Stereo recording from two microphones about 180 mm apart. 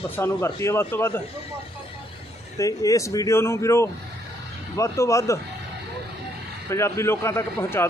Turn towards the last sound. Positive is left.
turn(degrees=15)  # may be behind; listen again after turning